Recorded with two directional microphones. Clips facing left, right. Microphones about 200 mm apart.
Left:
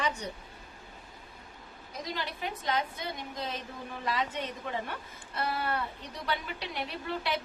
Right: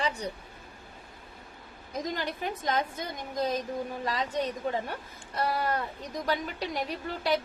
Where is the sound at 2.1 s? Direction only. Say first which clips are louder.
Right 3 dB; 45° right (ahead or behind).